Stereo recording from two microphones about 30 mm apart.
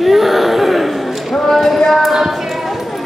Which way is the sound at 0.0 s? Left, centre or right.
Centre.